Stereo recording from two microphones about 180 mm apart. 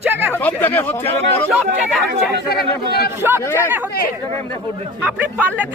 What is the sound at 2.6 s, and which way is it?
Speech, 60° left (ahead or behind).